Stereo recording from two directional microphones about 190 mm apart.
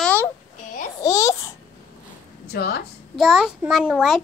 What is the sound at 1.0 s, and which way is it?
Babbling, 15° left (ahead or behind).